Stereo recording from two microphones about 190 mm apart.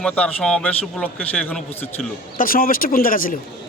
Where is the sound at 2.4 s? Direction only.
50° left (ahead or behind).